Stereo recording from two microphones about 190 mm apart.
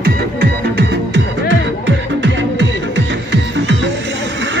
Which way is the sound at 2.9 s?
75° right (ahead or behind).